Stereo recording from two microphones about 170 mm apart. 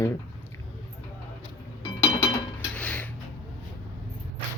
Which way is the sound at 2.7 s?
10° left (ahead or behind).